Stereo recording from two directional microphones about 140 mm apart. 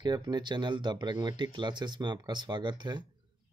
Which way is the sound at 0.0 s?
30° right (ahead or behind).